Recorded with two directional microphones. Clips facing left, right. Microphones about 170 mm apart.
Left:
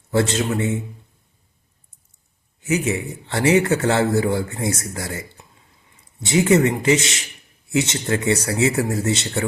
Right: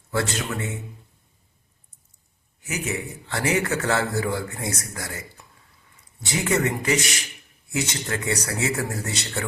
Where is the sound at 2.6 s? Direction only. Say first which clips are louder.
Left 8 dB; 25° left (ahead or behind).